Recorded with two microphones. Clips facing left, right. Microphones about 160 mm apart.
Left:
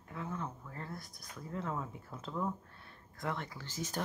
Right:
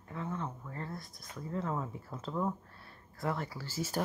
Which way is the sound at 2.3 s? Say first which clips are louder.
Right 3 dB; 15° right (ahead or behind).